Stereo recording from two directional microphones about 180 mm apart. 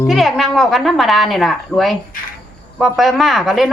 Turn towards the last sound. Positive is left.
turn(degrees=0)  # may be behind; listen again after turning